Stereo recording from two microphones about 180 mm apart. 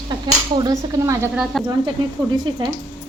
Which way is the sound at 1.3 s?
5° right (ahead or behind).